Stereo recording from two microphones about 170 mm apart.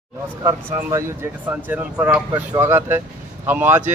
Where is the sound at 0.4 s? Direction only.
15° right (ahead or behind).